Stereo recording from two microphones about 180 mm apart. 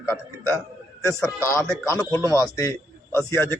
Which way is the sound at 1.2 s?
15° left (ahead or behind).